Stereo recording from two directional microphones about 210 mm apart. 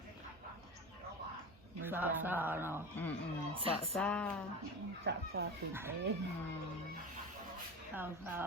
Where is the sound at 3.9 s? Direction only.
5° left (ahead or behind).